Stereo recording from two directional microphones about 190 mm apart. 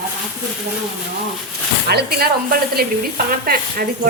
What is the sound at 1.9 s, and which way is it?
A woman's voice, 55° right (ahead or behind).